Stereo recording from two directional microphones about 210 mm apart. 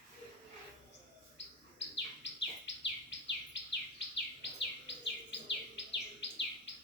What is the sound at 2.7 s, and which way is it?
Bird, 60° left (ahead or behind).